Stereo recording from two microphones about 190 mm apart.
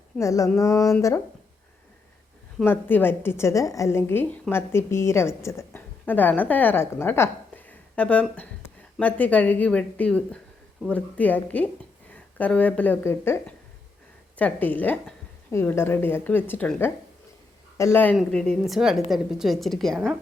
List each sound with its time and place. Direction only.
0.2 s a woman's voice: 15° left (ahead or behind)
2.6 s a woman's voice: 10° left (ahead or behind)